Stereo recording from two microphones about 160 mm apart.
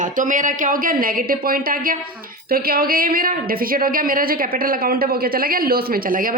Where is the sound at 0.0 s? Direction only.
55° right (ahead or behind).